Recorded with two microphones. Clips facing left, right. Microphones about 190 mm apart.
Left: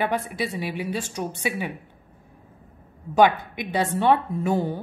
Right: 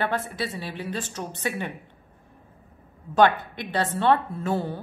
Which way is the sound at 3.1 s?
10° left (ahead or behind).